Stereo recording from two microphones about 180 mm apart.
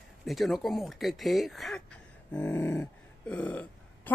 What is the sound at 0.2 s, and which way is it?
Speech, centre (ahead or behind).